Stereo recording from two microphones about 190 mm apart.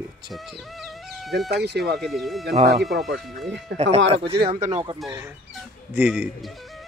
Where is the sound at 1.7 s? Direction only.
60° right (ahead or behind).